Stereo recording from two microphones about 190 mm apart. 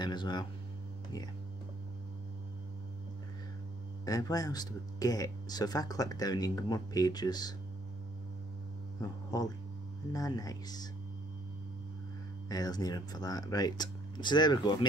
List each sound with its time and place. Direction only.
0.0 s speech: 25° left (ahead or behind)
4.0 s speech: 20° left (ahead or behind)
9.0 s speech: 20° left (ahead or behind)
12.4 s speech: 20° left (ahead or behind)